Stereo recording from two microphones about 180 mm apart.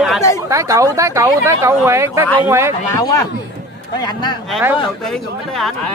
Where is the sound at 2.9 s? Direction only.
20° left (ahead or behind).